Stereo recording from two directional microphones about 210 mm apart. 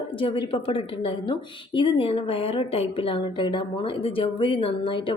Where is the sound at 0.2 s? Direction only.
25° left (ahead or behind).